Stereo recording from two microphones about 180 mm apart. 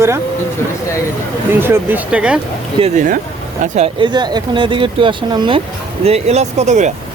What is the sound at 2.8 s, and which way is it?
Speech, 45° right (ahead or behind).